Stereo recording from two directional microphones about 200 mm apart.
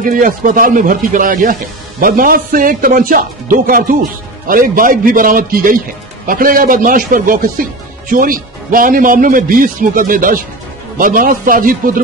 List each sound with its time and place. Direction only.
0.0 s speech: 45° right (ahead or behind)